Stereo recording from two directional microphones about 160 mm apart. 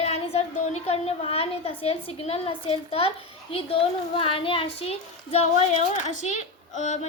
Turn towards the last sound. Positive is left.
turn(degrees=45)  # may be behind; listen again after turning